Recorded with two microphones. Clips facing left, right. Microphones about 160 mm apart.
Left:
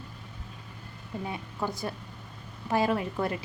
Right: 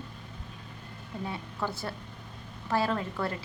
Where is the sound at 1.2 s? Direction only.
15° left (ahead or behind).